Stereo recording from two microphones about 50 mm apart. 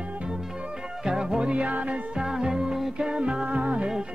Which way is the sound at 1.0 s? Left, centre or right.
Centre.